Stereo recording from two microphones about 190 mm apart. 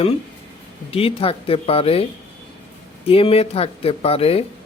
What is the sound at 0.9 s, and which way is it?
Speech, 30° left (ahead or behind).